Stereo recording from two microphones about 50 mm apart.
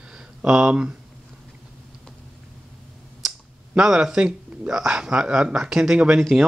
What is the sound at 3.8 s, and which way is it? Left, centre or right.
Speech, centre.